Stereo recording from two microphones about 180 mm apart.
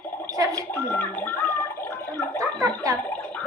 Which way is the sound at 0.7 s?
10° left (ahead or behind).